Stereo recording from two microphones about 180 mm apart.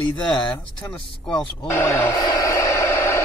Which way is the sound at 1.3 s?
10° left (ahead or behind).